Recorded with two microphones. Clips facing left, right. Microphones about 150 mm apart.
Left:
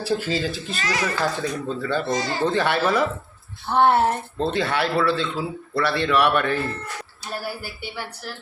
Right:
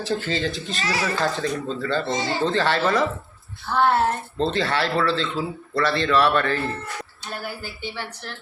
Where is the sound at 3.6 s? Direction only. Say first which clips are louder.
Left 2 dB; 20° left (ahead or behind).